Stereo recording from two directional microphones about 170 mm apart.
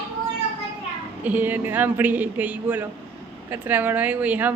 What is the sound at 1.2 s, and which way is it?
A woman's voice, 10° right (ahead or behind).